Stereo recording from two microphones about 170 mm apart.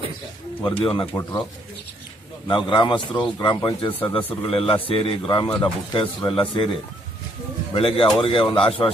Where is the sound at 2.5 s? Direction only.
30° left (ahead or behind).